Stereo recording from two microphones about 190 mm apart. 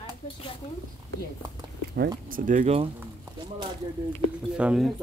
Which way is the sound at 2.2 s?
45° right (ahead or behind).